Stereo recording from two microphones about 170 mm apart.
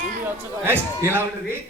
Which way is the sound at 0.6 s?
15° right (ahead or behind).